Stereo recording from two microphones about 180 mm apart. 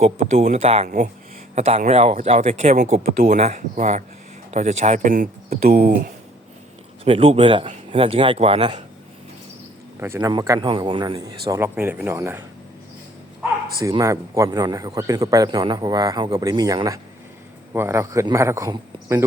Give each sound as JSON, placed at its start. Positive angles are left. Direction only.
{"t": 0.0, "sound": "speech", "side_deg": -40}
{"t": 7.0, "sound": "speech", "side_deg": -35}
{"t": 10.0, "sound": "speech", "side_deg": -15}
{"t": 13.8, "sound": "a man's voice", "side_deg": -15}